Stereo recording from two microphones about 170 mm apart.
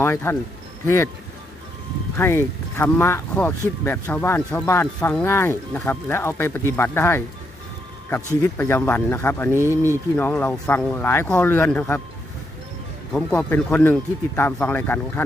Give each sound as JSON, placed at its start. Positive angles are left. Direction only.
{"t": 0.0, "sound": "speech", "side_deg": 15}
{"t": 2.1, "sound": "speech", "side_deg": 15}
{"t": 8.4, "sound": "speech", "side_deg": 15}
{"t": 9.6, "sound": "speech", "side_deg": -15}
{"t": 10.1, "sound": "speech", "side_deg": 10}
{"t": 13.3, "sound": "speech", "side_deg": 10}